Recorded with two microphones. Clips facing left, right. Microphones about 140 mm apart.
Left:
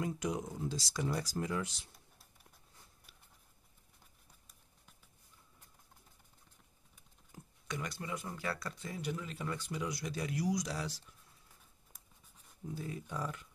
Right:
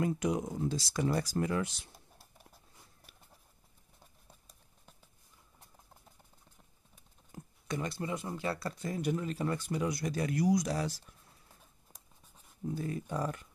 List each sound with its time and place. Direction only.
0.0 s speech: 60° right (ahead or behind); by 2.2 s 75° right (ahead or behind)
7.6 s speech: 30° right (ahead or behind)
8.6 s speech: 45° right (ahead or behind)
12.7 s speech: 50° right (ahead or behind)